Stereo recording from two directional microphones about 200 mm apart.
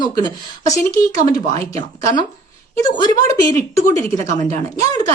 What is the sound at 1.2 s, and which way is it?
Speech, 35° right (ahead or behind).